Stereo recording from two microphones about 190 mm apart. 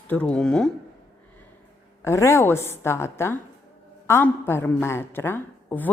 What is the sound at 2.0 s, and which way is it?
A woman's voice, 15° left (ahead or behind).